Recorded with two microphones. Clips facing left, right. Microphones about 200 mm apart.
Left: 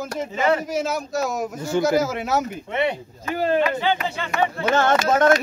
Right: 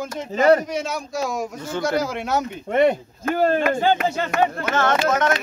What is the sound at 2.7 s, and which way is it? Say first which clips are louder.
Speech: right 8 dB; 45° right (ahead or behind).